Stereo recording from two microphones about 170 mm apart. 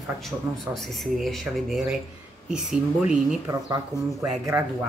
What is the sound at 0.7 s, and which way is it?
Speech, centre (ahead or behind).